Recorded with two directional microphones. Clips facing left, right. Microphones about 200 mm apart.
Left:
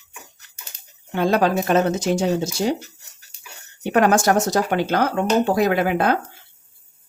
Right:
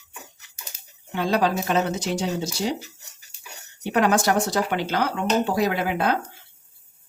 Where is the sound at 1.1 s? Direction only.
50° left (ahead or behind).